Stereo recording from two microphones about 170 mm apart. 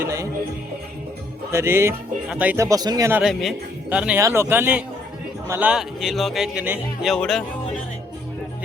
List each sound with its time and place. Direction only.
0.0 s music: 20° right (ahead or behind)
1.5 s speech: 15° right (ahead or behind)
3.1 s speech: 5° right (ahead or behind)